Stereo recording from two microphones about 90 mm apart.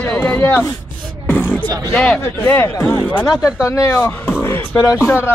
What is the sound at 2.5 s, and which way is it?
Speech, 30° left (ahead or behind).